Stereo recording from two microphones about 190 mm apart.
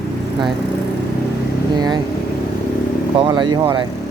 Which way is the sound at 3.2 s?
25° right (ahead or behind).